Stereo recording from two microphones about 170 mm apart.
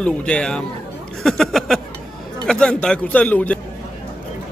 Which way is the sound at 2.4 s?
5° left (ahead or behind).